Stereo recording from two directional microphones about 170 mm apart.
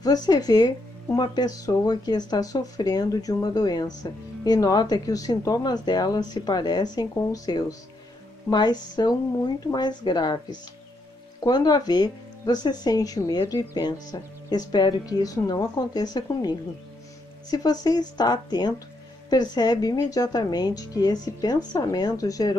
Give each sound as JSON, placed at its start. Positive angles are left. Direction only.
{"t": 0.0, "sound": "speech", "side_deg": 25}
{"t": 11.4, "sound": "speech", "side_deg": 25}